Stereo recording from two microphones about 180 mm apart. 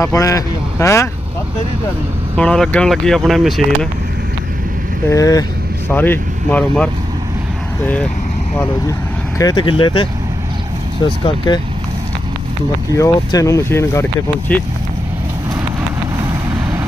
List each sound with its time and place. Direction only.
0.0 s speech: 20° left (ahead or behind)
2.3 s speech: 5° left (ahead or behind)
5.1 s speech: 20° left (ahead or behind)
9.4 s speech: 25° left (ahead or behind)
11.2 s speech: 25° left (ahead or behind)
12.9 s speech: 20° left (ahead or behind)
14.5 s speech: 5° left (ahead or behind)